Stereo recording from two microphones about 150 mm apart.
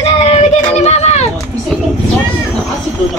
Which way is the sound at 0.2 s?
45° left (ahead or behind).